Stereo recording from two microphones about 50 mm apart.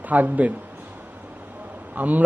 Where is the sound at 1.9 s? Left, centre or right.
Right.